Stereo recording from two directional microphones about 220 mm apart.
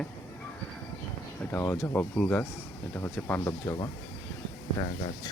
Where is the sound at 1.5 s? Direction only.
10° left (ahead or behind).